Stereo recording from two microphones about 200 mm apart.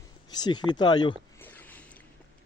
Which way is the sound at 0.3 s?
20° left (ahead or behind).